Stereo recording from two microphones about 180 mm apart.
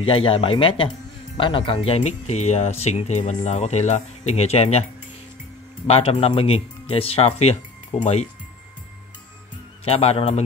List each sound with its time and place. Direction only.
0.0 s speech: 30° left (ahead or behind)
5.9 s speech: 30° left (ahead or behind)
9.8 s speech: 35° left (ahead or behind)